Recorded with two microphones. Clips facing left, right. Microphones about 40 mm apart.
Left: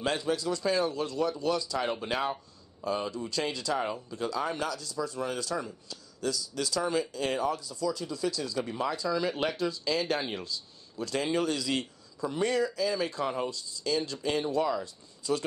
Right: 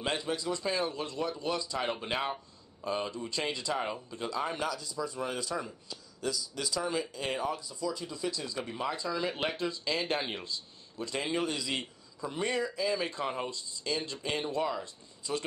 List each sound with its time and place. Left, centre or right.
0.0 s speech: centre
3.7 s a man's voice: centre
13.5 s speech: right